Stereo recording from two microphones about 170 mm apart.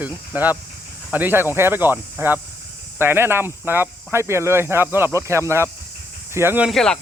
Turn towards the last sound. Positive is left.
turn(degrees=5)  # may be behind; listen again after turning